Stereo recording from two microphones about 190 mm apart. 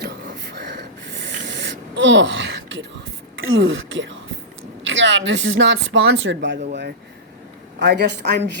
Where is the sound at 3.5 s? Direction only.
90° right; by 8.4 s 60° right (ahead or behind).